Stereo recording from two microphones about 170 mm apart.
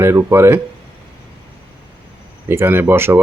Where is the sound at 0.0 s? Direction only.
15° right (ahead or behind).